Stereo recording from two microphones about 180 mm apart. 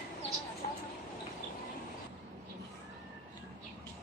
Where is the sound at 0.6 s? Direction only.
50° left (ahead or behind).